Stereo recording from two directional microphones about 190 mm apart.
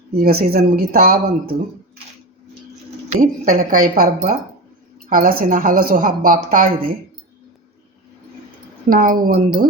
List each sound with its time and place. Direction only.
0.2 s a woman's voice: 55° right (ahead or behind)
3.1 s a woman's voice: 45° right (ahead or behind)
8.9 s a woman's voice: 50° right (ahead or behind)